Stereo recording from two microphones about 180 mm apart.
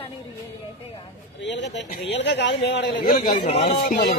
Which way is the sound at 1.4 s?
80° left.